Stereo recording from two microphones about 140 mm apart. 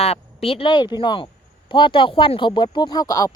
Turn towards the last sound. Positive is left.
turn(degrees=25)  # may be behind; listen again after turning